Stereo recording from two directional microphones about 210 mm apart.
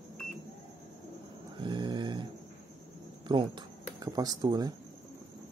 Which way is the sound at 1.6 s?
20° right (ahead or behind).